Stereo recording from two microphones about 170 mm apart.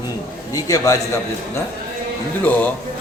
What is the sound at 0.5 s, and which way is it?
Speech, 20° left (ahead or behind).